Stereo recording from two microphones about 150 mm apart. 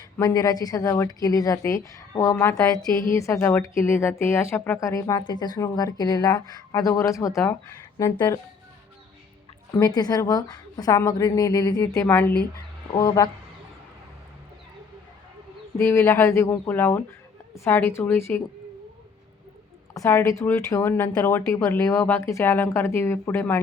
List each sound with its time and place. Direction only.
0.2 s a woman's voice: 25° left (ahead or behind)
4.8 s speech: 20° left (ahead or behind)
9.7 s a woman's voice: 25° left (ahead or behind)
12.9 s speech: 25° left (ahead or behind)
15.8 s a woman's voice: 15° left (ahead or behind)
19.9 s a woman's voice: 20° left (ahead or behind)